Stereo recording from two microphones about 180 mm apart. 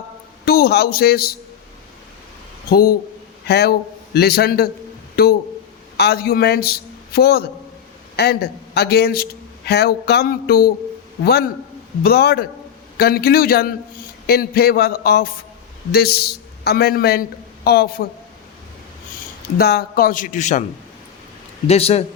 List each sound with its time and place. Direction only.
0.4 s a man's voice: 60° left (ahead or behind)
2.6 s a man's voice: 60° left (ahead or behind)
11.2 s a sound: 60° left (ahead or behind)
15.9 s a man's voice: 60° left (ahead or behind)
19.5 s a man's voice: 60° left (ahead or behind); by 20.7 s 40° left (ahead or behind)
21.7 s speech: 35° left (ahead or behind)